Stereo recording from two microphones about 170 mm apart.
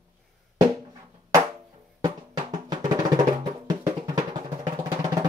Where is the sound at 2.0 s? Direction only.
25° right (ahead or behind).